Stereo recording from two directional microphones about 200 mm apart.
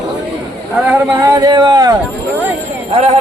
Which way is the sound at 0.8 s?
15° right (ahead or behind).